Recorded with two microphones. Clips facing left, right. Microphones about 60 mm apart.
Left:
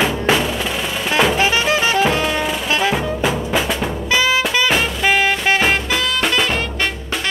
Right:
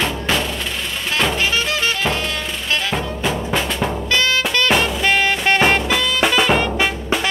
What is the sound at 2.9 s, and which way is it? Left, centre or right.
Music, centre.